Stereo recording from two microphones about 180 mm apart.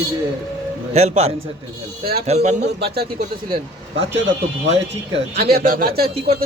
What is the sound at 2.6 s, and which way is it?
Speech, 65° right (ahead or behind).